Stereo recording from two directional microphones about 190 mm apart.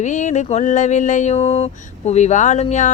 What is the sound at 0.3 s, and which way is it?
Music, 40° left (ahead or behind).